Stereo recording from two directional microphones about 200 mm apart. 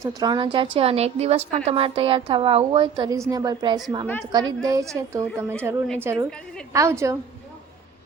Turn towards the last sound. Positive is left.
turn(degrees=-15)  # may be behind; listen again after turning